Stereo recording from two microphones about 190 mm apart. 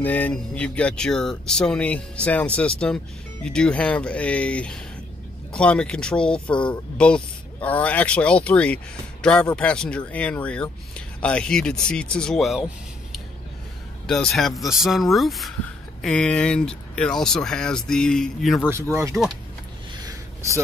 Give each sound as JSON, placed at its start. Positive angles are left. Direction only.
{"t": 0.0, "sound": "speech", "side_deg": 10}
{"t": 14.0, "sound": "speech", "side_deg": 5}
{"t": 18.7, "sound": "speech", "side_deg": -15}
{"t": 20.0, "sound": "a sound", "side_deg": -20}